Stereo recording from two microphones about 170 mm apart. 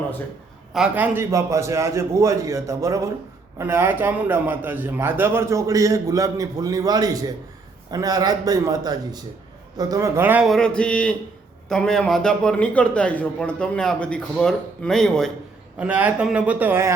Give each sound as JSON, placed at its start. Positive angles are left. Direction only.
{"t": 0.7, "sound": "a man's voice", "side_deg": -5}
{"t": 15.8, "sound": "a man's voice", "side_deg": -10}